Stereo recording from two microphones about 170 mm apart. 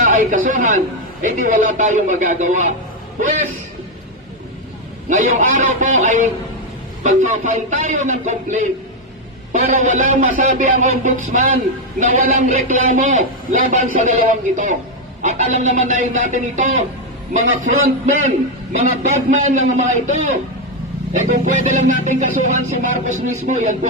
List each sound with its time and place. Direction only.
0.0 s a man's voice: 50° right (ahead or behind)
5.0 s a man's voice: 45° right (ahead or behind)